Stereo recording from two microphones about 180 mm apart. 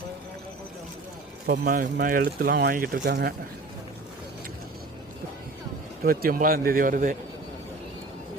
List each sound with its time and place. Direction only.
1.5 s speech: 50° right (ahead or behind)
6.1 s speech: 55° right (ahead or behind)